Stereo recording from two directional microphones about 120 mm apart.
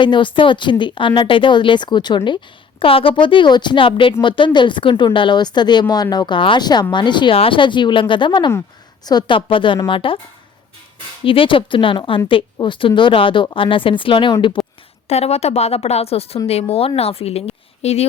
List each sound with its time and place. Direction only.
0.0 s speech: 40° left (ahead or behind)
11.2 s speech: 50° left (ahead or behind)
14.6 s a woman's voice: centre (ahead or behind)
15.1 s a woman's voice: 60° left (ahead or behind)